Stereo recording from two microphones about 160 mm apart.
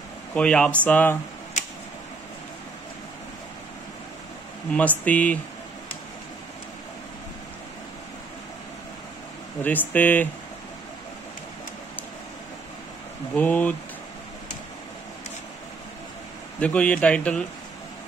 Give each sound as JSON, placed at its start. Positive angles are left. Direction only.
{"t": 0.3, "sound": "speech", "side_deg": 5}
{"t": 4.7, "sound": "speech", "side_deg": 10}
{"t": 9.6, "sound": "speech", "side_deg": 10}
{"t": 13.3, "sound": "speech", "side_deg": 10}
{"t": 16.5, "sound": "speech", "side_deg": 5}